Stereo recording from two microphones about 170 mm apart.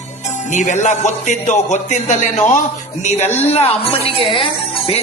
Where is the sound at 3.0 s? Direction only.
40° left (ahead or behind).